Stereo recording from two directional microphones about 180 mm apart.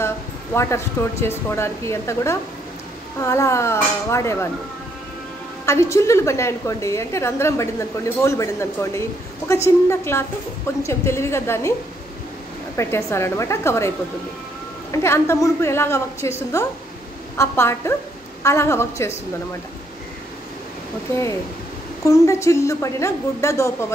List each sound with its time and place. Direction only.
0.6 s a woman's voice: 15° left (ahead or behind)
5.7 s a woman's voice: 15° left (ahead or behind)
12.7 s a woman's voice: 15° left (ahead or behind)
22.0 s a woman's voice: 15° left (ahead or behind)